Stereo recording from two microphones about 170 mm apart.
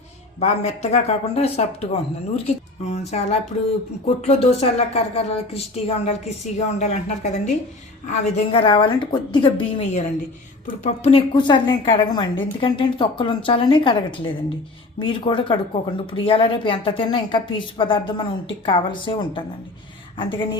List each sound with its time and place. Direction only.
0.3 s a woman's voice: 40° left (ahead or behind)
8.6 s a woman's voice: 25° left (ahead or behind)
11.0 s a woman's voice: 30° left (ahead or behind)